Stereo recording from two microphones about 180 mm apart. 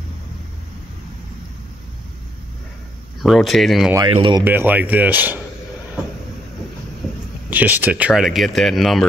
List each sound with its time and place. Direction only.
3.2 s speech: centre (ahead or behind)
4.1 s speech: 30° right (ahead or behind)
4.5 s speech: 10° right (ahead or behind)
7.4 s speech: 10° right (ahead or behind)